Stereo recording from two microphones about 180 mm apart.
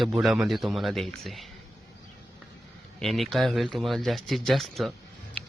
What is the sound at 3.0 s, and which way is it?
Speech, centre (ahead or behind).